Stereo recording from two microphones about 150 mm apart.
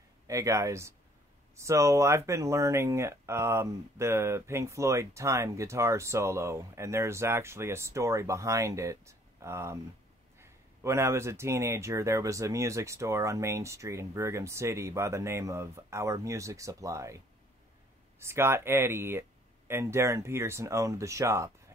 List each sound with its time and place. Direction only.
0.3 s speech: 20° right (ahead or behind)
18.2 s speech: 15° right (ahead or behind)